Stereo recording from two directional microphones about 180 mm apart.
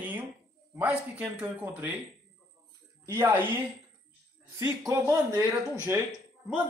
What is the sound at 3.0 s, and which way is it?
Speech, 10° right (ahead or behind).